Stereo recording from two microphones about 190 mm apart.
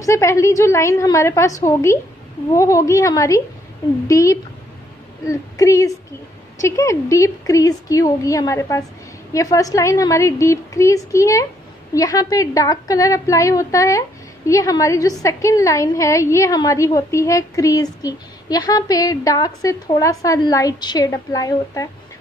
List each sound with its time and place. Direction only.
0.0 s a woman's voice: 15° left (ahead or behind)